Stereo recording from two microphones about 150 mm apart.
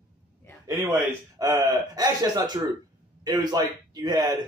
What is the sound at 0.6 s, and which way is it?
A man's voice, 15° right (ahead or behind).